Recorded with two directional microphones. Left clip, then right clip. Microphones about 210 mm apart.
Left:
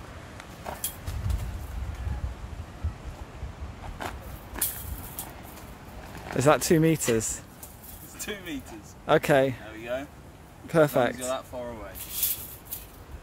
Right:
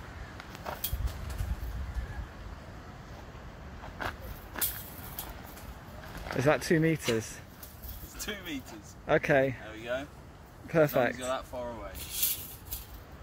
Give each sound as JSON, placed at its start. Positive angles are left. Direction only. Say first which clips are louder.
{"t": 4.0, "sound": "walk", "louder": "even", "side_deg": 5}
{"t": 4.6, "sound": "vehicle", "louder": "left 1 dB", "side_deg": 0}
{"t": 6.3, "sound": "speech", "louder": "left 5 dB", "side_deg": 20}
{"t": 8.2, "sound": "speech", "louder": "left 2 dB", "side_deg": 0}
{"t": 9.0, "sound": "speech", "louder": "left 4 dB", "side_deg": 15}
{"t": 9.7, "sound": "speech", "louder": "left 2 dB", "side_deg": -5}
{"t": 10.7, "sound": "speech", "louder": "left 4 dB", "side_deg": 15}